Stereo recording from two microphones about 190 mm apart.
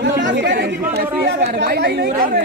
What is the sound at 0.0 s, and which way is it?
Chatter, 65° right (ahead or behind).